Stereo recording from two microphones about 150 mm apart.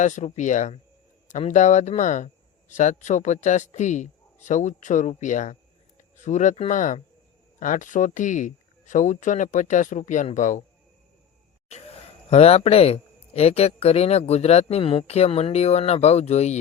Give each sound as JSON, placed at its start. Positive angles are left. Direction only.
{"t": 0.0, "sound": "a man's voice", "side_deg": 50}
{"t": 11.7, "sound": "a man's voice", "side_deg": 45}